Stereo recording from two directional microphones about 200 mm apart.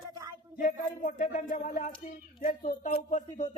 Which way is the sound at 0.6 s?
40° left (ahead or behind).